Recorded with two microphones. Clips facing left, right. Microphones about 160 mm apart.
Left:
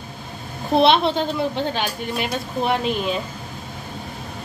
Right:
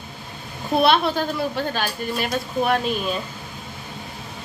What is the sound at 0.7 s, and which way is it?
A woman's voice, 25° left (ahead or behind).